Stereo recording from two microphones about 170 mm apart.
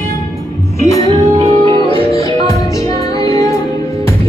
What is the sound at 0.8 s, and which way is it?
Music, 20° left (ahead or behind).